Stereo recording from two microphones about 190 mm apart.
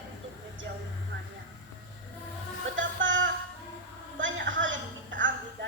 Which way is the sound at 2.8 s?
80° right.